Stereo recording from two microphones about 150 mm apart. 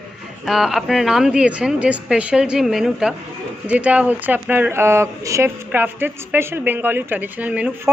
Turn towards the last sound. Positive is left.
turn(degrees=-10)  # may be behind; listen again after turning